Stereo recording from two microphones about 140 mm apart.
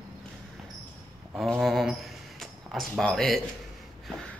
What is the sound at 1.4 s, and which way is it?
A man's voice, centre (ahead or behind).